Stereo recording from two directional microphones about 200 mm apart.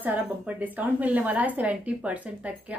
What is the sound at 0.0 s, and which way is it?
A woman's voice, 10° right (ahead or behind).